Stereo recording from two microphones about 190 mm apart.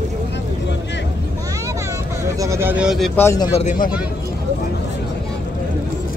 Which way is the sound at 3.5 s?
40° left (ahead or behind).